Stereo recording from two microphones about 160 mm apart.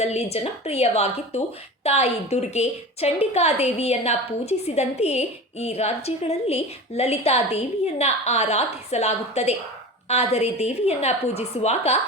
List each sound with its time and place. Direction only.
0.0 s a woman's voice: 40° left (ahead or behind)